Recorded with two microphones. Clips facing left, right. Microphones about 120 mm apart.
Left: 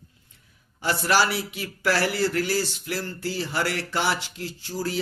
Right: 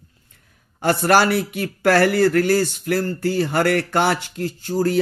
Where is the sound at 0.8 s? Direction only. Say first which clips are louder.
Right 6 dB; 50° right (ahead or behind).